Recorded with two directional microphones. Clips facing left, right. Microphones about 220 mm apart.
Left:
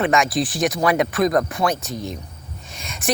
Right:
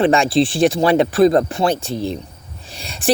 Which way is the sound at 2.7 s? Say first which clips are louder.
Right 6 dB; 35° right (ahead or behind).